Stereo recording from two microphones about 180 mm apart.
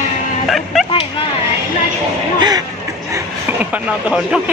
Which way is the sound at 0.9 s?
30° left (ahead or behind).